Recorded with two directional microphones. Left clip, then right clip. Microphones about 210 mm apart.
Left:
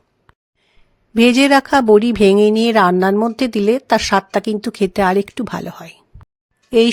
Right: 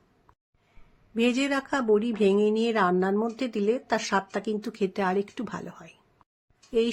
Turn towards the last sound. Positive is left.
turn(degrees=50)  # may be behind; listen again after turning